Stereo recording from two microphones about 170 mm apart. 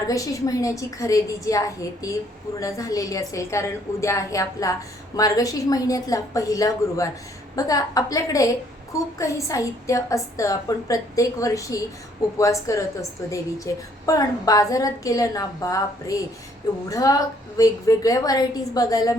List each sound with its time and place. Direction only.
0.1 s a woman's voice: 20° left (ahead or behind)